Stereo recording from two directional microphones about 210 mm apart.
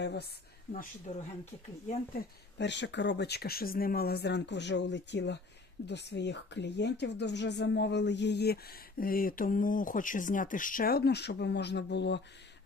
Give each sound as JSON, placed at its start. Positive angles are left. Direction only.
{"t": 0.0, "sound": "speech", "side_deg": 55}
{"t": 0.7, "sound": "speech", "side_deg": 35}
{"t": 2.6, "sound": "speech", "side_deg": 55}